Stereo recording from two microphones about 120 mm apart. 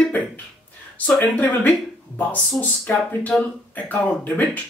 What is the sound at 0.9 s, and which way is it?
Speech, 15° left (ahead or behind).